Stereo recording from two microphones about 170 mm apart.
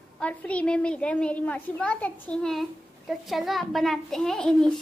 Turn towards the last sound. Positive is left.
turn(degrees=5)  # may be behind; listen again after turning